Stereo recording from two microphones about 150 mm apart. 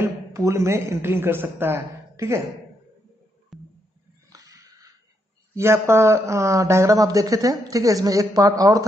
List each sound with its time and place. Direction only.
0.0 s a man's voice: 20° right (ahead or behind)
3.5 s music: centre (ahead or behind)
4.3 s a sound: 25° right (ahead or behind)
5.5 s speech: 20° right (ahead or behind)